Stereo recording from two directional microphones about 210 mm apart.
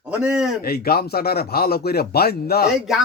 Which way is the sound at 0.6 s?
45° left (ahead or behind).